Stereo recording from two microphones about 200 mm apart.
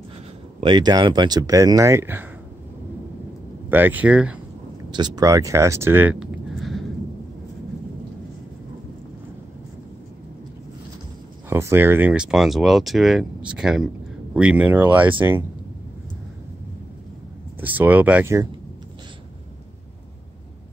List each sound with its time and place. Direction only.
0.6 s speech: 25° right (ahead or behind)
3.7 s speech: 10° right (ahead or behind)
4.9 s speech: 20° right (ahead or behind)
11.4 s speech: 10° right (ahead or behind)
17.6 s speech: 10° right (ahead or behind)